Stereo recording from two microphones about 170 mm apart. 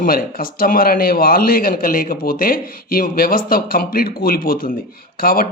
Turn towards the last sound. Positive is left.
turn(degrees=60)  # may be behind; listen again after turning